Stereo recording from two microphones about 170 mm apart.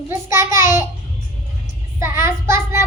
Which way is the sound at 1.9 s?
15° right (ahead or behind).